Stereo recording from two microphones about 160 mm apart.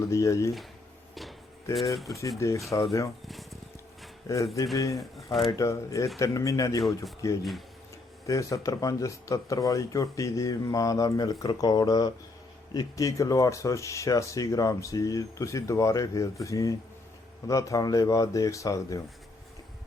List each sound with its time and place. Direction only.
0.1 s speech: 20° left (ahead or behind)
1.7 s speech: centre (ahead or behind)
2.0 s speech: 20° left (ahead or behind)
3.2 s a sound: centre (ahead or behind)
4.3 s speech: 20° left (ahead or behind)
4.9 s speech: centre (ahead or behind)
5.5 s speech: 20° left (ahead or behind)